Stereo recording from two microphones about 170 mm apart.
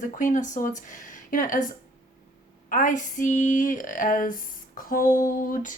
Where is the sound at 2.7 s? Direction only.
50° left (ahead or behind).